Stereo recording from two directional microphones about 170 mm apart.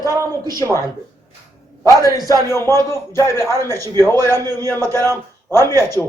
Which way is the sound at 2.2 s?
20° right (ahead or behind).